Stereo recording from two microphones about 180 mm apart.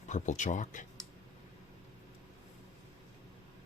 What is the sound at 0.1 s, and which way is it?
Speech, 45° left (ahead or behind).